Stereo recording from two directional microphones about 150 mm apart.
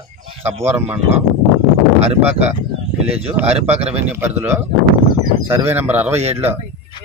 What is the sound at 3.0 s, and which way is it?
Speech, 45° right (ahead or behind).